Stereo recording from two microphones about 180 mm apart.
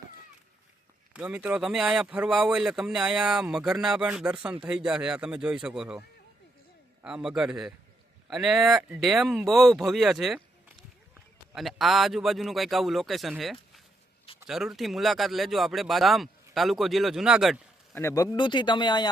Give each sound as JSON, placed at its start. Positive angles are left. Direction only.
{"t": 1.1, "sound": "speech", "side_deg": -5}
{"t": 7.0, "sound": "speech", "side_deg": -5}
{"t": 17.9, "sound": "speech", "side_deg": 15}